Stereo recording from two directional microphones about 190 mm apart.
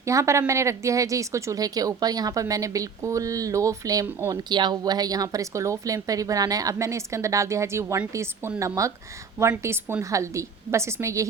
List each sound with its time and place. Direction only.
0.0 s speech: 15° right (ahead or behind)